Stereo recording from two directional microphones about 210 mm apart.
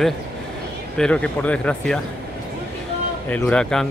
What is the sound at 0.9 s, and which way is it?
A man's voice, 5° left (ahead or behind).